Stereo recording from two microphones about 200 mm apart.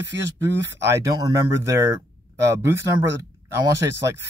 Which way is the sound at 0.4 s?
15° right (ahead or behind).